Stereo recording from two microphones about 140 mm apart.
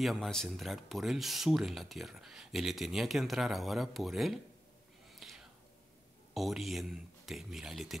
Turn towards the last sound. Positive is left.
turn(degrees=0)  # may be behind; listen again after turning